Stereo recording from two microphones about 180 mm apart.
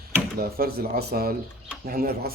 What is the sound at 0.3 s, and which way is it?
Speech, 55° right (ahead or behind).